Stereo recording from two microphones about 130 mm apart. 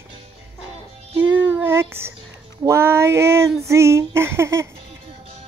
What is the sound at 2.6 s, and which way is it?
Female singing, 20° right (ahead or behind).